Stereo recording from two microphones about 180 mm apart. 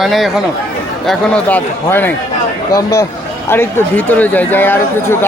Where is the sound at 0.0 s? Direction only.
Centre (ahead or behind).